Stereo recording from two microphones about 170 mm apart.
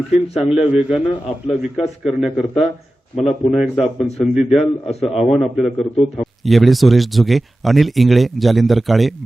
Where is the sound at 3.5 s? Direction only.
Centre (ahead or behind).